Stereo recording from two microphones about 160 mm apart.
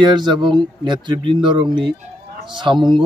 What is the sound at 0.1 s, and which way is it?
Speech, 30° right (ahead or behind).